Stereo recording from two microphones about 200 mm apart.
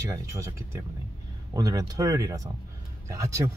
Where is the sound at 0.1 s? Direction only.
15° right (ahead or behind).